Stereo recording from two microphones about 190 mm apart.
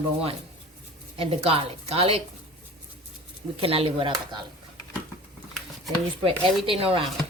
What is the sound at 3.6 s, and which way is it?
Speech, 30° right (ahead or behind).